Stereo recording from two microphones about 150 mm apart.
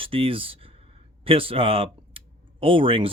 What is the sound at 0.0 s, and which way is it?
Speech, 35° right (ahead or behind).